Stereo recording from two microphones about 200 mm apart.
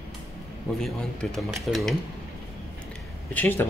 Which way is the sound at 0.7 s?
Centre (ahead or behind).